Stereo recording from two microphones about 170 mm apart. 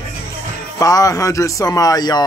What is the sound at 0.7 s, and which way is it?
Speech, 20° left (ahead or behind).